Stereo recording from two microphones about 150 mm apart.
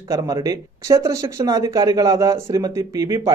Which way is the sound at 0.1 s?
20° right (ahead or behind).